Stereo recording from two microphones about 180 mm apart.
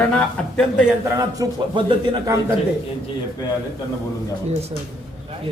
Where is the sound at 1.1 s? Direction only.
20° right (ahead or behind).